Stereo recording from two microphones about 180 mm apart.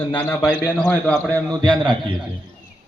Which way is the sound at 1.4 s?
20° right (ahead or behind).